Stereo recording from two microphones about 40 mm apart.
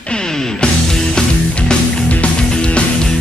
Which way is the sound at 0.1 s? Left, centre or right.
Centre.